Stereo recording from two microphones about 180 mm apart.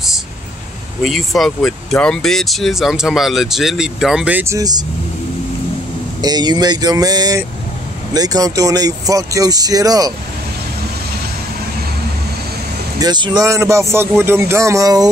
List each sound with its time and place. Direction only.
1.0 s speech: centre (ahead or behind); by 4.8 s 20° right (ahead or behind)
6.2 s speech: 25° right (ahead or behind)
13.0 s speech: 25° right (ahead or behind)